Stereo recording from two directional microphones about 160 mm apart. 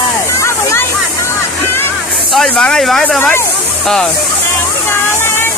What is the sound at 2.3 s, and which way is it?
Speech, 5° left (ahead or behind).